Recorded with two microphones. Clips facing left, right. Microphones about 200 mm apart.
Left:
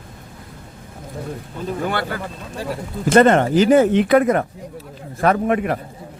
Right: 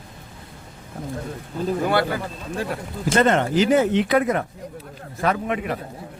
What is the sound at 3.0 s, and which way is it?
Speech, 55° left (ahead or behind).